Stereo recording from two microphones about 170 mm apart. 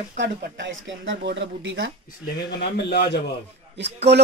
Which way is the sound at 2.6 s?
75° left (ahead or behind).